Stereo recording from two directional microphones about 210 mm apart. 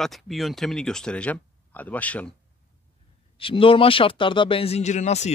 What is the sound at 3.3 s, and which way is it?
A man's voice, 25° left (ahead or behind).